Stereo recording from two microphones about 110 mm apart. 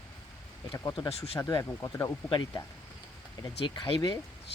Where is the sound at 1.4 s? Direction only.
30° left (ahead or behind).